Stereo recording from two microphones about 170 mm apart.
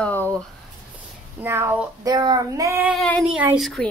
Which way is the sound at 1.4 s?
15° right (ahead or behind).